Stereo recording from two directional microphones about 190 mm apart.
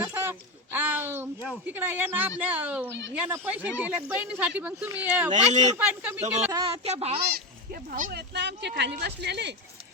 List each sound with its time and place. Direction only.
0.0 s a sound: 10° right (ahead or behind)
3.2 s speech: 10° right (ahead or behind)
5.5 s a woman's voice: 35° right (ahead or behind)
5.7 s speech: 10° right (ahead or behind)
6.5 s a woman's voice: 25° right (ahead or behind)
7.7 s speech: 45° right (ahead or behind); by 9.6 s 60° right (ahead or behind)